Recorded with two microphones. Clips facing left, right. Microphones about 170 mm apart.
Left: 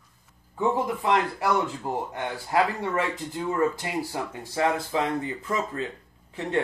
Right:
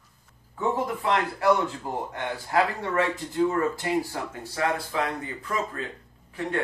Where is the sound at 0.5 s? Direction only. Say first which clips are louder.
Left 2 dB; 15° left (ahead or behind).